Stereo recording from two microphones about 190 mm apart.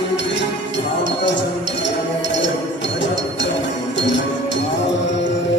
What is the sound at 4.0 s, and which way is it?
Music, 70° left (ahead or behind).